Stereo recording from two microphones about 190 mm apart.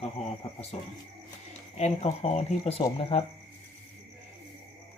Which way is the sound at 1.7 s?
35° left (ahead or behind).